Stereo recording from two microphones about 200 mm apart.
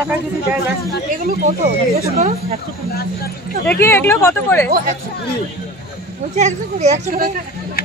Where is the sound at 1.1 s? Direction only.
45° right (ahead or behind).